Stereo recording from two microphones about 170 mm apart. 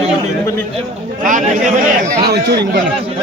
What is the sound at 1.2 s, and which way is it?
Speech, 50° right (ahead or behind).